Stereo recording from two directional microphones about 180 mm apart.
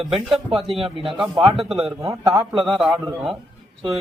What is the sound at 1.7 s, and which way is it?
Speech, centre (ahead or behind).